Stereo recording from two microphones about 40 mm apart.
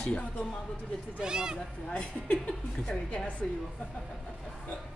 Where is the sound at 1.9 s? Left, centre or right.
Left.